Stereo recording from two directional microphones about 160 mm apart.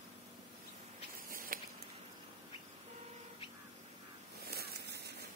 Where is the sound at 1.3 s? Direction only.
65° right (ahead or behind).